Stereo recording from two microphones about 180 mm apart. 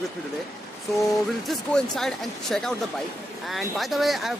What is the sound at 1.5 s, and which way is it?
Speech, centre (ahead or behind).